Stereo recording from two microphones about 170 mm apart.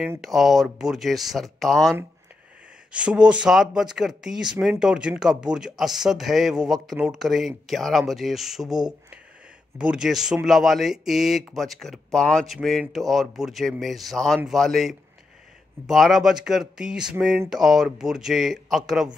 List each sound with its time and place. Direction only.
0.2 s speech: centre (ahead or behind)